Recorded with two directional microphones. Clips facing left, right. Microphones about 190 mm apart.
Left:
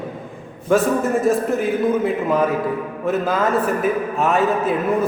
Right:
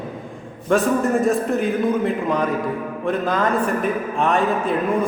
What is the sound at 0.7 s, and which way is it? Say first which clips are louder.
A man's voice: left 1 dB; centre (ahead or behind).